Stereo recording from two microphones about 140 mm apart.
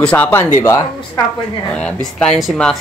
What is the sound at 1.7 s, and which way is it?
Speech, 5° left (ahead or behind).